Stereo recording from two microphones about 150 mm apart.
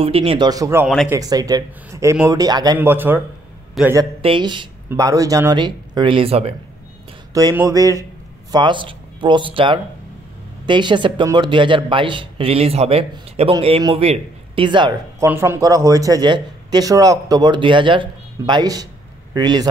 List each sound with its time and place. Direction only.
0.0 s speech: 40° right (ahead or behind)
0.5 s speech: 20° right (ahead or behind)
2.8 s speech: 15° right (ahead or behind)
3.8 s speech: centre (ahead or behind)
4.2 s speech: 35° right (ahead or behind)
7.5 s speech: 20° right (ahead or behind)
15.1 s a man's voice: 15° right (ahead or behind)